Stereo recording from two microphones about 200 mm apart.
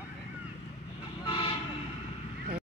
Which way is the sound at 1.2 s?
25° left (ahead or behind).